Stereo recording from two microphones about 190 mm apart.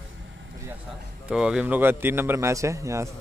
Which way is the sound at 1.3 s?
5° right (ahead or behind).